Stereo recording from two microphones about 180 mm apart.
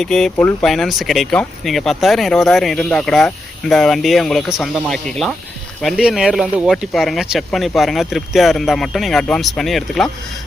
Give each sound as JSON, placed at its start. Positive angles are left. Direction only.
{"t": 0.0, "sound": "speech", "side_deg": 5}